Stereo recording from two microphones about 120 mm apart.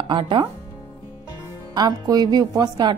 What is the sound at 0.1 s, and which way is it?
Speech, 45° right (ahead or behind).